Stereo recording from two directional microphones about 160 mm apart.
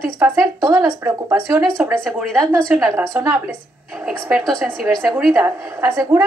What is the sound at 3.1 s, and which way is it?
A woman's voice, 10° right (ahead or behind).